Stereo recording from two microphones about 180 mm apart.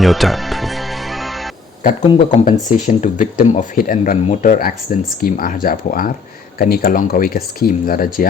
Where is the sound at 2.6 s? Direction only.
45° left (ahead or behind).